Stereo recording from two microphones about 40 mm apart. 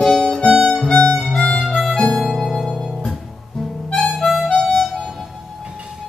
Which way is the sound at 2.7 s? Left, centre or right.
Centre.